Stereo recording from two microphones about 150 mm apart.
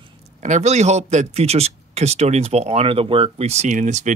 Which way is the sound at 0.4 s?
50° right (ahead or behind).